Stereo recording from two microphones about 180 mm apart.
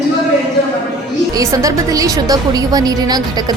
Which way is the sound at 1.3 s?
20° right (ahead or behind).